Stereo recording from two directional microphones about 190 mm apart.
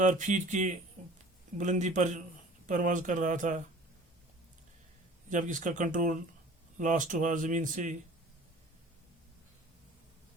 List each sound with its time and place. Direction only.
0.0 s speech: 40° right (ahead or behind)
5.3 s speech: 40° right (ahead or behind)